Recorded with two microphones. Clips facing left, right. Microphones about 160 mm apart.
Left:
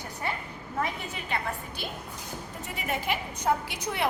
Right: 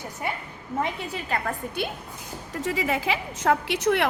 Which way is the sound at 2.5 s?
90° right.